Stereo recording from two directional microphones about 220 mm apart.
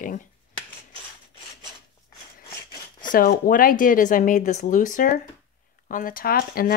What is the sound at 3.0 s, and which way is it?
Speech, 40° left (ahead or behind).